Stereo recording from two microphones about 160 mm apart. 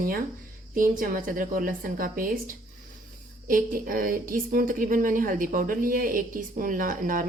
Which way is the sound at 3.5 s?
60° right (ahead or behind).